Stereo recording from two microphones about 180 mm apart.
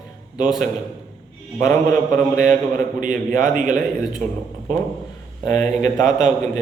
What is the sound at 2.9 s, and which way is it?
Speech, 45° right (ahead or behind).